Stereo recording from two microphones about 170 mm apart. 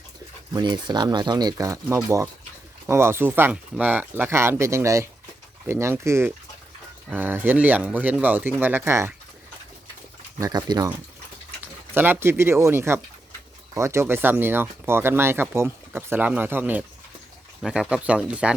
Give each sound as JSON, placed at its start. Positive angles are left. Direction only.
{"t": 0.5, "sound": "speech", "side_deg": -25}
{"t": 10.4, "sound": "speech", "side_deg": -20}
{"t": 11.9, "sound": "speech", "side_deg": -10}